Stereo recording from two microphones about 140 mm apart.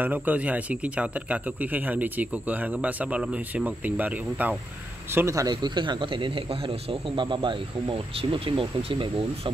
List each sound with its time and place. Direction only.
0.0 s a man's voice: 10° right (ahead or behind); by 9.5 s 40° right (ahead or behind)